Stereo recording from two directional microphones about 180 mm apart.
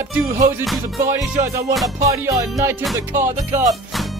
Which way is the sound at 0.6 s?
Centre (ahead or behind).